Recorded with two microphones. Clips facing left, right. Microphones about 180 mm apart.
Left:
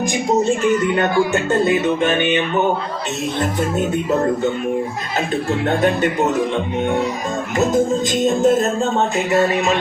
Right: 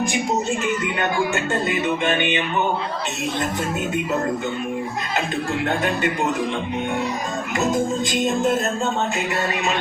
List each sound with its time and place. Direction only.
2.0 s speech: 40° left (ahead or behind)
8.3 s speech: 35° left (ahead or behind)